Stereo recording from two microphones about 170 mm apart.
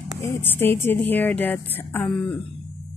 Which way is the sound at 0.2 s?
10° left (ahead or behind).